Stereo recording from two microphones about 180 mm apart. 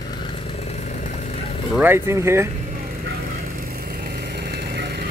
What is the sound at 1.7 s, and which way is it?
Speech, 10° right (ahead or behind).